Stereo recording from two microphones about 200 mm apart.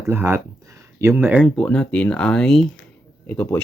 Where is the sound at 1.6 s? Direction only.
5° left (ahead or behind).